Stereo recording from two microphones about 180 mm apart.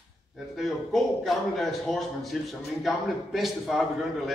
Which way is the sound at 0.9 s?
Centre (ahead or behind).